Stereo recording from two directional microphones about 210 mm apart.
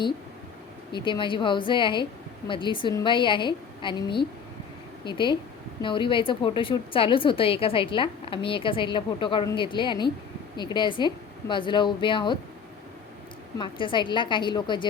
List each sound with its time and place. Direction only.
0.9 s a woman's voice: 20° left (ahead or behind)
13.6 s a woman's voice: 25° left (ahead or behind)